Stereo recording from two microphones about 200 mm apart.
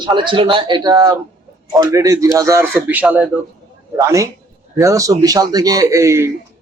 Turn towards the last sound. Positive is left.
turn(degrees=-15)  # may be behind; listen again after turning